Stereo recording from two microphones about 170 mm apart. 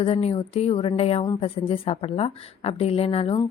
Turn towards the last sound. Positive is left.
turn(degrees=35)  # may be behind; listen again after turning